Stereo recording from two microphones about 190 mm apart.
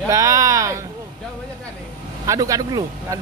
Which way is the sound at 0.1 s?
15° right (ahead or behind).